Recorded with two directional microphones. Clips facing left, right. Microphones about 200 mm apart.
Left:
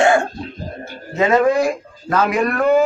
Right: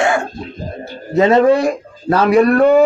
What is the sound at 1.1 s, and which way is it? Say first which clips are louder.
A man's voice: right 4 dB; 35° right (ahead or behind).